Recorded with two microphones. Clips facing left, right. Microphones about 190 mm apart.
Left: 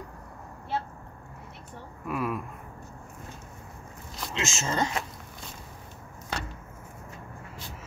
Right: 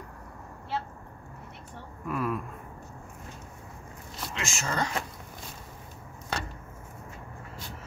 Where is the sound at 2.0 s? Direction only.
10° left (ahead or behind).